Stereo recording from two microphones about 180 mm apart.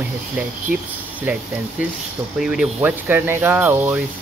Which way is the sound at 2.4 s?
5° right (ahead or behind).